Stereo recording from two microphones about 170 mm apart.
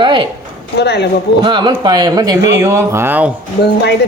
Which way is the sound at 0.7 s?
80° left.